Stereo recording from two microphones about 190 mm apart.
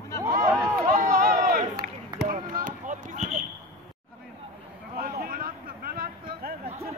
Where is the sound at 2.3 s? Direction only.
45° right (ahead or behind).